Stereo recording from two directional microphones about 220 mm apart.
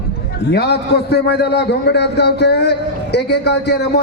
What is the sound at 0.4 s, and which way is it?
A man's voice, 50° left (ahead or behind).